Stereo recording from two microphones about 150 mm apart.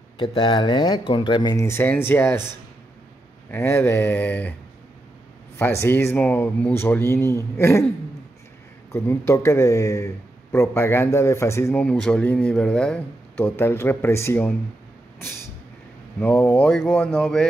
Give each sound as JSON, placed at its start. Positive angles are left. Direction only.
{"t": 0.2, "sound": "speech", "side_deg": 30}
{"t": 3.5, "sound": "speech", "side_deg": 15}
{"t": 5.6, "sound": "speech", "side_deg": 15}
{"t": 8.9, "sound": "speech", "side_deg": 15}
{"t": 11.8, "sound": "speech", "side_deg": 5}
{"t": 15.1, "sound": "vehicle", "side_deg": 15}
{"t": 16.2, "sound": "speech", "side_deg": 10}